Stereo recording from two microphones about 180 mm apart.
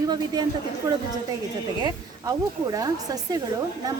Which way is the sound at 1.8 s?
20° right (ahead or behind).